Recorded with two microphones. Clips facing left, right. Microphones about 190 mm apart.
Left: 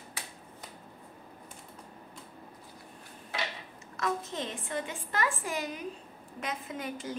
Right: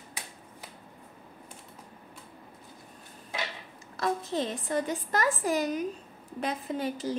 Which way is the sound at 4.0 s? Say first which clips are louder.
Right 4 dB; 35° right (ahead or behind).